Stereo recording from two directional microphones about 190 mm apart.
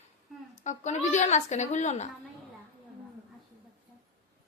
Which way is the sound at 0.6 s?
40° left (ahead or behind).